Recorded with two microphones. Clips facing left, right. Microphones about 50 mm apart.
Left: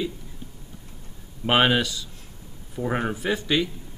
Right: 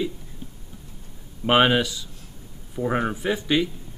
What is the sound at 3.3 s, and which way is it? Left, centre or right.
Speech, centre.